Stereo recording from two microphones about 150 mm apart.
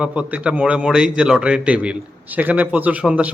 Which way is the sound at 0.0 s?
10° right (ahead or behind).